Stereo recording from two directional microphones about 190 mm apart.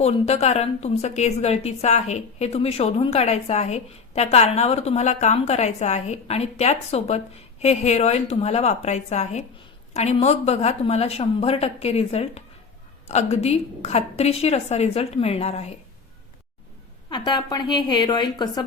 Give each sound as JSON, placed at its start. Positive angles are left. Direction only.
{"t": 0.0, "sound": "a woman's voice", "side_deg": 35}
{"t": 17.1, "sound": "a woman's voice", "side_deg": 25}